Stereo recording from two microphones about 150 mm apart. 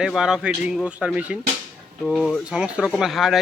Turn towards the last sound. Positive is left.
turn(degrees=0)  # may be behind; listen again after turning